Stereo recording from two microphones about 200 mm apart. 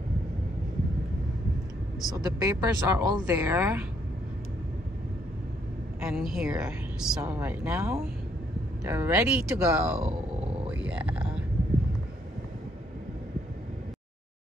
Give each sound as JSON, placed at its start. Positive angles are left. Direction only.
{"t": 2.0, "sound": "speech", "side_deg": -20}
{"t": 5.9, "sound": "speech", "side_deg": -5}
{"t": 10.7, "sound": "a sound", "side_deg": -5}